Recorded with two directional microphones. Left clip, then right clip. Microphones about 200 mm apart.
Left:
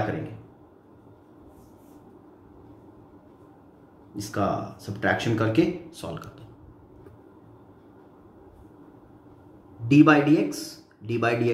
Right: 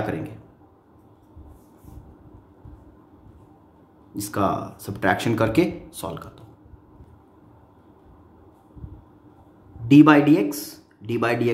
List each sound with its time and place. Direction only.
4.1 s speech: 50° right (ahead or behind)
9.8 s a man's voice: 40° right (ahead or behind)